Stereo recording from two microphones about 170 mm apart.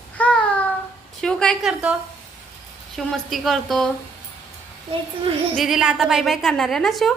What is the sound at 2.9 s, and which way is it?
Speech, centre (ahead or behind).